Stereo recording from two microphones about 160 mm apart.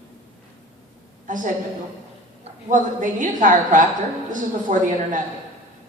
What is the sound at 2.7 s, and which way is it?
A woman's voice, 55° right (ahead or behind).